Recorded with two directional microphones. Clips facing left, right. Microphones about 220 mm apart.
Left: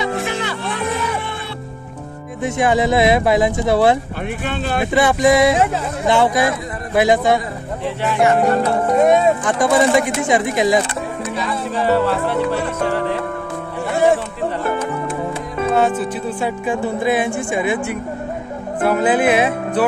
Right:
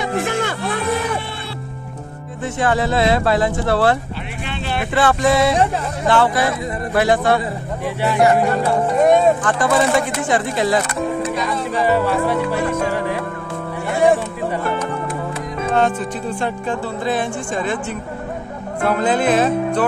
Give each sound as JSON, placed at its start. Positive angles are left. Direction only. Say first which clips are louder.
{"t": 0.2, "sound": "music", "louder": "right 2 dB", "side_deg": -50}
{"t": 2.4, "sound": "speech", "louder": "left 3 dB", "side_deg": 15}
{"t": 4.5, "sound": "speech", "louder": "left 3 dB", "side_deg": 45}
{"t": 4.9, "sound": "speech", "louder": "left 2 dB", "side_deg": 15}
{"t": 8.9, "sound": "speech", "louder": "even", "side_deg": 0}
{"t": 9.4, "sound": "speech", "louder": "left 2 dB", "side_deg": 15}
{"t": 11.7, "sound": "speech", "louder": "left 1 dB", "side_deg": -10}
{"t": 15.7, "sound": "speech", "louder": "left 1 dB", "side_deg": 5}